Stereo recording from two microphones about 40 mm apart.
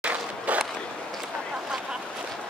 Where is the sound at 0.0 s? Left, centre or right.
Right.